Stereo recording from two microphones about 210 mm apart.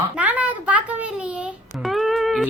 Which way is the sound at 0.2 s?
5° right (ahead or behind).